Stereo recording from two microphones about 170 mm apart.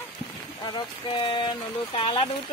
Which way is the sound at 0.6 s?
30° left (ahead or behind).